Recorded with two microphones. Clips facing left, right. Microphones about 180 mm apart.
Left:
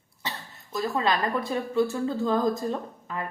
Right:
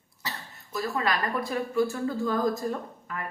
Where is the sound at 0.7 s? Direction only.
25° left (ahead or behind).